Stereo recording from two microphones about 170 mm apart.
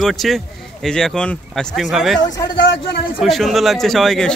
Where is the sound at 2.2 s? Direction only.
20° left (ahead or behind).